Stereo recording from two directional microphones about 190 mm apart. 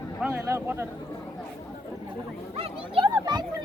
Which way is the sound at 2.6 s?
25° right (ahead or behind).